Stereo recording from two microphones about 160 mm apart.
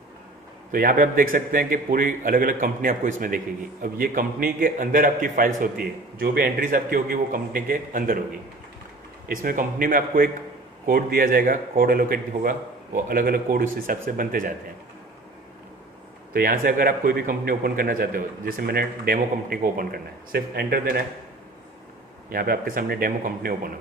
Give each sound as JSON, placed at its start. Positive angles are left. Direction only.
{"t": 0.7, "sound": "a man's voice", "side_deg": -60}
{"t": 9.3, "sound": "a man's voice", "side_deg": -60}
{"t": 16.3, "sound": "a man's voice", "side_deg": -65}
{"t": 22.3, "sound": "a man's voice", "side_deg": -65}